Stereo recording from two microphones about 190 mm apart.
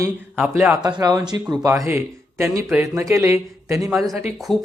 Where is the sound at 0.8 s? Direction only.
20° right (ahead or behind).